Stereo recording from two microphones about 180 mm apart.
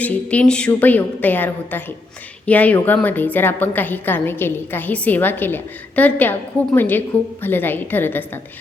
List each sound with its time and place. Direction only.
0.0 s a woman's voice: 10° left (ahead or behind)